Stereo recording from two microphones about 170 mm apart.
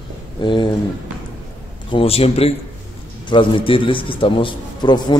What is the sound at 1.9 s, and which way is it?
A man's voice, 35° left (ahead or behind).